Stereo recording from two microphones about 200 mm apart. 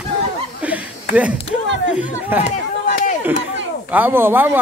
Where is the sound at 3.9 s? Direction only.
10° right (ahead or behind).